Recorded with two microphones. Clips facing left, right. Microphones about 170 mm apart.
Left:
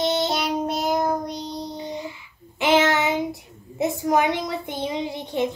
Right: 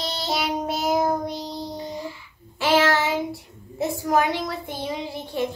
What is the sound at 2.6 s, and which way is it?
A child's voice, 20° left (ahead or behind).